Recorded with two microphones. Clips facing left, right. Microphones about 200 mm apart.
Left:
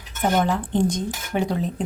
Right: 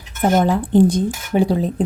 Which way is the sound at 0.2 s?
35° right (ahead or behind).